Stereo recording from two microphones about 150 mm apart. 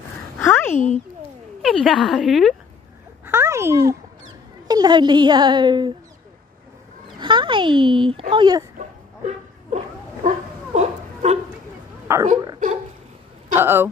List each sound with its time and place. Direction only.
0.4 s a sound: 15° left (ahead or behind)
0.7 s a child's voice: 55° left (ahead or behind)
1.6 s speech: centre (ahead or behind)
3.3 s a sound: 15° right (ahead or behind)
4.6 s a child's voice: 25° right (ahead or behind)
7.2 s speech: 35° right (ahead or behind)
8.7 s dog: 50° right (ahead or behind)
10.2 s a sound: 50° right (ahead or behind)
12.1 s speech: 15° right (ahead or behind)
13.6 s speech: 15° right (ahead or behind)